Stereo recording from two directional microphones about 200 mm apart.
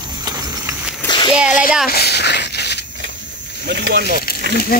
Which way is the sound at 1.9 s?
55° left (ahead or behind).